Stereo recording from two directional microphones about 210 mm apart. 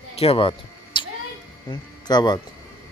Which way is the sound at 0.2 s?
25° left (ahead or behind).